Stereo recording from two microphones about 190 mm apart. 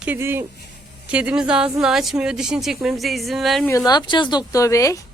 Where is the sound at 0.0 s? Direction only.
10° right (ahead or behind).